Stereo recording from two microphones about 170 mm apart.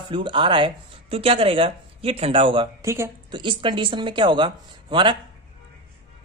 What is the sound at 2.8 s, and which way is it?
Speech, 15° right (ahead or behind).